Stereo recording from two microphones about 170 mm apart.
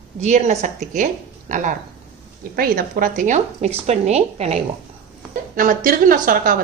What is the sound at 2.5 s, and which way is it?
Speech, 60° right (ahead or behind).